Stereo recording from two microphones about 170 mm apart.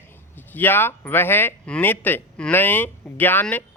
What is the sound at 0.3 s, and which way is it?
Speech, 10° left (ahead or behind).